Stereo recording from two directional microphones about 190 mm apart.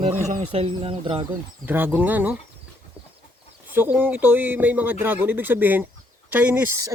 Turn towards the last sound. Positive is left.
turn(degrees=-15)  # may be behind; listen again after turning